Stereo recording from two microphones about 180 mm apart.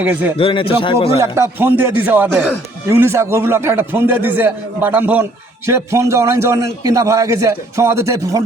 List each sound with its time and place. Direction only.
0.0 s a man's voice: 10° right (ahead or behind)
0.3 s a man's voice: 30° left (ahead or behind)
1.2 s a man's voice: 15° right (ahead or behind)